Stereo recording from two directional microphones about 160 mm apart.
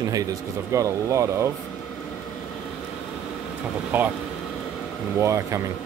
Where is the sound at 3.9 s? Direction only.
10° right (ahead or behind).